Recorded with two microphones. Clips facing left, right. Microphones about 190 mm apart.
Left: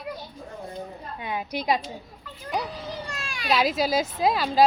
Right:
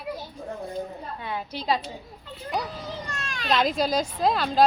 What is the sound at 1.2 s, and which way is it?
Speech, 15° left (ahead or behind).